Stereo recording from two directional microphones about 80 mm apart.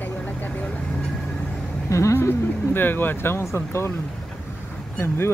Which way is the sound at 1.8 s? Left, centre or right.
Left.